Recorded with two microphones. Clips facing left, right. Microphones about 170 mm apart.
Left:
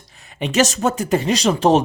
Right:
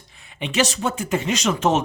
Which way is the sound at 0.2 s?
40° left (ahead or behind).